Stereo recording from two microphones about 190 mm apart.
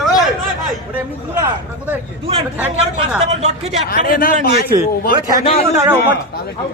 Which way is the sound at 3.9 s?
50° left (ahead or behind).